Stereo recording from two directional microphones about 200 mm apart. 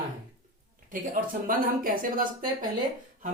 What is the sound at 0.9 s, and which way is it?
Speech, 45° right (ahead or behind).